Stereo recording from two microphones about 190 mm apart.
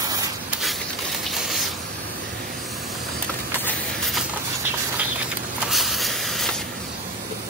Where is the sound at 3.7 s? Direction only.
Centre (ahead or behind).